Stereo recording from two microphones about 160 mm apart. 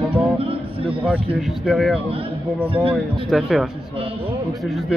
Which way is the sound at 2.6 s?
35° right (ahead or behind).